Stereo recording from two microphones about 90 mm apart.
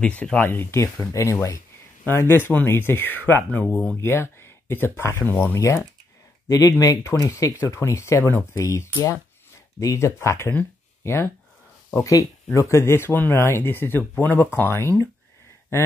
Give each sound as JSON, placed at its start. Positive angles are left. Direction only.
{"t": 0.0, "sound": "speech", "side_deg": 15}
{"t": 3.6, "sound": "speech", "side_deg": 10}
{"t": 3.9, "sound": "speech", "side_deg": 30}
{"t": 5.6, "sound": "speech", "side_deg": 35}
{"t": 11.9, "sound": "speech", "side_deg": 40}